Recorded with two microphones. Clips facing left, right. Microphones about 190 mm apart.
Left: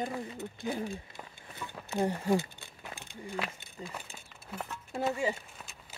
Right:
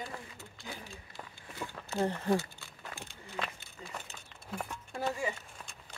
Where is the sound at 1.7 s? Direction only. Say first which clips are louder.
Left 2 dB; 15° left (ahead or behind).